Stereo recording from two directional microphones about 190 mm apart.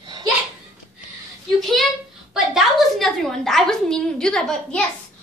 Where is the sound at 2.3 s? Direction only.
Centre (ahead or behind).